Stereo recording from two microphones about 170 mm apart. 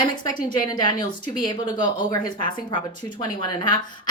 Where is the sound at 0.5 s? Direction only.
25° left (ahead or behind).